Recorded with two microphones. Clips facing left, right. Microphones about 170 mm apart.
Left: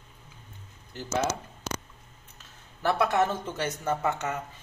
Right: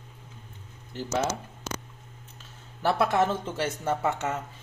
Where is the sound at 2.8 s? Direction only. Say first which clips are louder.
Right 1 dB; 25° right (ahead or behind).